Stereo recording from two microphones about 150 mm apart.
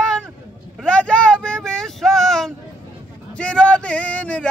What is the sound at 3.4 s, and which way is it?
Speech, 5° left (ahead or behind).